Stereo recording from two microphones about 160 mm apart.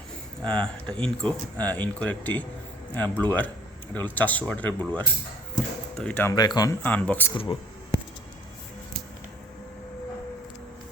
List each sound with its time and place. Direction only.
0.4 s speech: 5° left (ahead or behind)
5.5 s basketball bounce: 5° left (ahead or behind)
6.3 s speech: 25° left (ahead or behind)
6.8 s speech: 10° left (ahead or behind)